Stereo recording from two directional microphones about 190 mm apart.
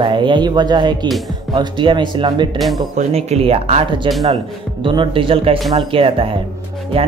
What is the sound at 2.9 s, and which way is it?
Speech, 35° right (ahead or behind).